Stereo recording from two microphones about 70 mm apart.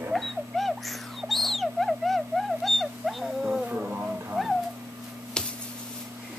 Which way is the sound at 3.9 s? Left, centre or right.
Right.